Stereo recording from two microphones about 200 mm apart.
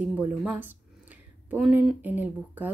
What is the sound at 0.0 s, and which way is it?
Speech, 5° right (ahead or behind).